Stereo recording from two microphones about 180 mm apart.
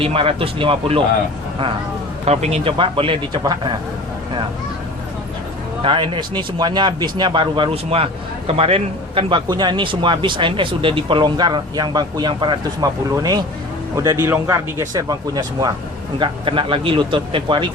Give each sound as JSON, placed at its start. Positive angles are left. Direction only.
{"t": 0.0, "sound": "speech", "side_deg": -30}
{"t": 2.2, "sound": "speech", "side_deg": -35}
{"t": 5.8, "sound": "speech", "side_deg": -25}